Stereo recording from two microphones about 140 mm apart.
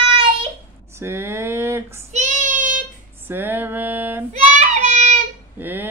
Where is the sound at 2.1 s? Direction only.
65° right (ahead or behind).